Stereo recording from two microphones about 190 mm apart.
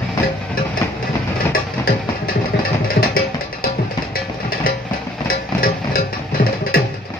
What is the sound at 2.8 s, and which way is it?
Music, 50° left (ahead or behind).